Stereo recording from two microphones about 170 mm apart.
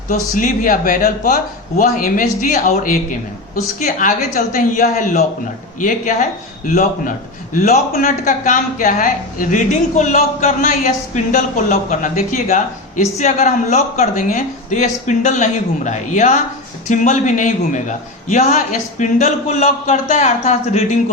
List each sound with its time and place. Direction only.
0.1 s a man's voice: 50° left (ahead or behind)